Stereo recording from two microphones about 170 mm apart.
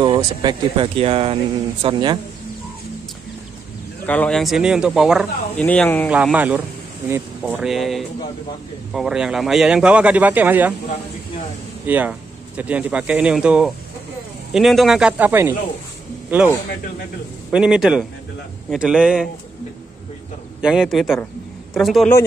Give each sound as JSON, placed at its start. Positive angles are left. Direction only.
{"t": 0.0, "sound": "speech", "side_deg": -25}
{"t": 4.0, "sound": "speech", "side_deg": 10}
{"t": 5.6, "sound": "speech", "side_deg": 10}
{"t": 6.0, "sound": "speech", "side_deg": -5}
{"t": 11.8, "sound": "speech", "side_deg": -10}
{"t": 17.5, "sound": "speech", "side_deg": -5}
{"t": 20.6, "sound": "speech", "side_deg": -5}